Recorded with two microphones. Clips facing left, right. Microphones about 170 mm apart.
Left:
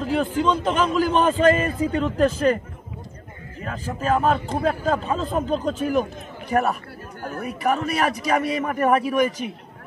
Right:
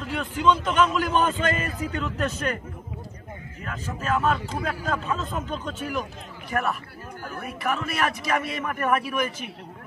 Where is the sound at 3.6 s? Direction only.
35° left (ahead or behind).